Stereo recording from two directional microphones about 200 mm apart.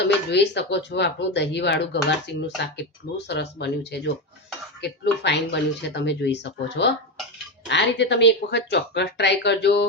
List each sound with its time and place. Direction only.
0.0 s speech: 60° left (ahead or behind)